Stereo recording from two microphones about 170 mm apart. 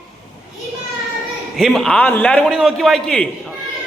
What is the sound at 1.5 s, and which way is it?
Speech, centre (ahead or behind).